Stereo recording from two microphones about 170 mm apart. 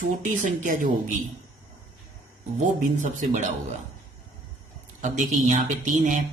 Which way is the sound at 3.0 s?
45° right (ahead or behind).